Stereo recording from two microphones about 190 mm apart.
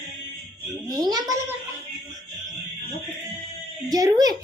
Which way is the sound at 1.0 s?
20° right (ahead or behind).